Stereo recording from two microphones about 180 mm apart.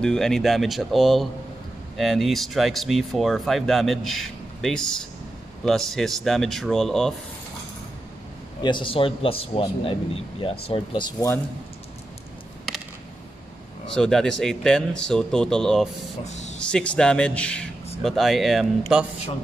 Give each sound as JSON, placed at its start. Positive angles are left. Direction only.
{"t": 0.0, "sound": "speech", "side_deg": 5}
{"t": 8.6, "sound": "a man's voice", "side_deg": 30}
{"t": 13.8, "sound": "speech", "side_deg": 5}
{"t": 16.3, "sound": "a sound", "side_deg": 40}
{"t": 16.5, "sound": "speech", "side_deg": 5}